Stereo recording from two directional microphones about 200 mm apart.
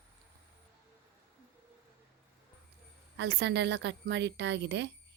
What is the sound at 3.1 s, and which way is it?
A woman's voice, 55° right (ahead or behind).